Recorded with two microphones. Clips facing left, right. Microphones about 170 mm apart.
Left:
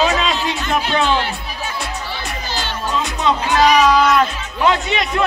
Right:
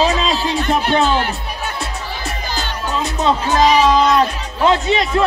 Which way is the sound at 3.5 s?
30° right (ahead or behind).